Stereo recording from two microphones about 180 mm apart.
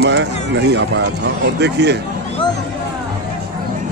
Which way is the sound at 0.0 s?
70° right (ahead or behind).